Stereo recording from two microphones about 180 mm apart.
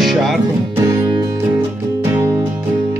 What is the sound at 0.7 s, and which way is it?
Music, 20° right (ahead or behind).